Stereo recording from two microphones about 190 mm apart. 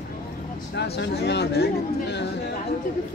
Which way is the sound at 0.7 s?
65° left (ahead or behind).